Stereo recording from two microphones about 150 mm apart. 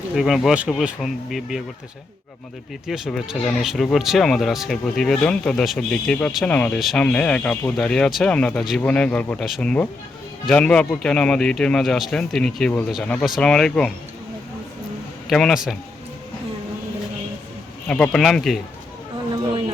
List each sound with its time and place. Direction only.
0.2 s speech: centre (ahead or behind)
2.8 s speech: 5° right (ahead or behind)
15.3 s speech: centre (ahead or behind)
17.8 s speech: 10° left (ahead or behind)